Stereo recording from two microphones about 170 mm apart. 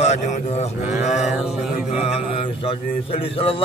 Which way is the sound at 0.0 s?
40° left (ahead or behind).